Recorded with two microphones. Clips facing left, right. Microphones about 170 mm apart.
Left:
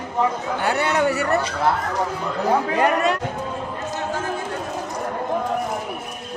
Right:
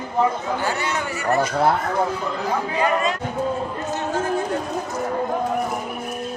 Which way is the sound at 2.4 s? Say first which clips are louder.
Left 4 dB; 60° left (ahead or behind).